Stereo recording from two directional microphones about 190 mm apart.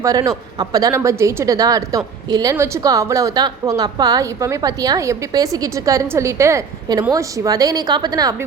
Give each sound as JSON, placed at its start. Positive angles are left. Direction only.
{"t": 0.0, "sound": "a woman's voice", "side_deg": -20}